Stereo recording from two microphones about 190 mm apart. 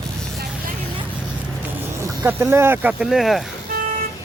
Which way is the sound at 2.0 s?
15° right (ahead or behind).